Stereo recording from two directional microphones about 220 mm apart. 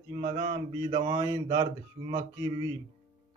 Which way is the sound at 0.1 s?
20° right (ahead or behind).